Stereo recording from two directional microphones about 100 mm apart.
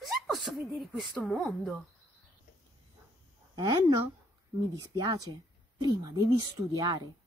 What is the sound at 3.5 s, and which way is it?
A woman's voice, 40° right (ahead or behind).